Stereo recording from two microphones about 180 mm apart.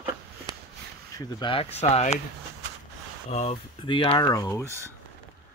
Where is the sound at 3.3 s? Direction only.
35° left (ahead or behind); by 4.6 s 15° left (ahead or behind).